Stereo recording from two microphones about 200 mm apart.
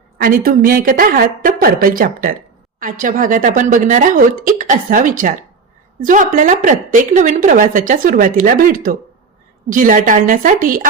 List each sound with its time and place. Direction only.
0.2 s a woman's voice: 45° right (ahead or behind)